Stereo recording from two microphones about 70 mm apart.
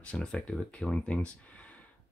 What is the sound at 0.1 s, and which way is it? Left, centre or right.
Speech, centre.